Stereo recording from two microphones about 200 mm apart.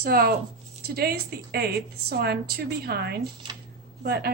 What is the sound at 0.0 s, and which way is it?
Speech, 50° right (ahead or behind).